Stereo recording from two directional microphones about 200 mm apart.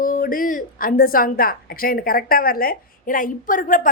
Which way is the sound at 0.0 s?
45° left (ahead or behind).